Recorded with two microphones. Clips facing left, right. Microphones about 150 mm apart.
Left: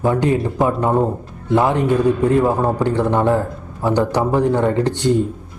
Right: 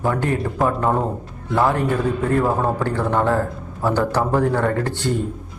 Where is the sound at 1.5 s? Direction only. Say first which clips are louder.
Left 3 dB; 15° left (ahead or behind).